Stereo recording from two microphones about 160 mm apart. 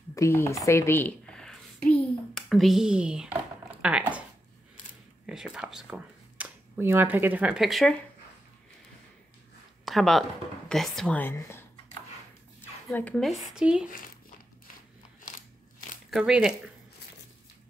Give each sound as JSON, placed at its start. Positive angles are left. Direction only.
{"t": 0.1, "sound": "speech", "side_deg": 15}
{"t": 1.8, "sound": "a sound", "side_deg": 10}
{"t": 3.8, "sound": "speech", "side_deg": -10}
{"t": 5.2, "sound": "speech", "side_deg": -5}
{"t": 9.8, "sound": "speech", "side_deg": 0}
{"t": 12.9, "sound": "speech", "side_deg": 5}
{"t": 16.1, "sound": "speech", "side_deg": -5}